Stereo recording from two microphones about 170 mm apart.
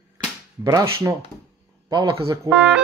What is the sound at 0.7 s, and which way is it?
Speech, 20° right (ahead or behind).